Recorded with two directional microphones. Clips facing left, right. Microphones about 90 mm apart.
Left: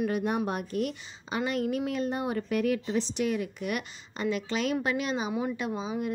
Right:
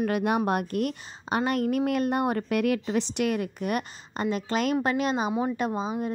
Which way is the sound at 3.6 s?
45° right (ahead or behind).